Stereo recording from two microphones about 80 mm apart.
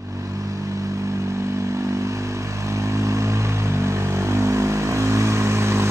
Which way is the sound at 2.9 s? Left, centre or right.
Right.